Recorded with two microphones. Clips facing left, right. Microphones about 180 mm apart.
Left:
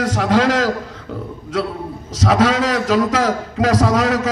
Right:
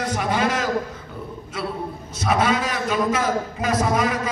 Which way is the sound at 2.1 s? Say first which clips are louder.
Left 5 dB; 90° left.